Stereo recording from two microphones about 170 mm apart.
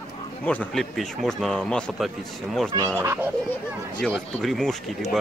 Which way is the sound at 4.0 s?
5° left (ahead or behind).